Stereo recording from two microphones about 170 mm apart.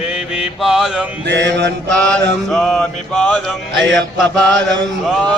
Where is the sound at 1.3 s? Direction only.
90° right.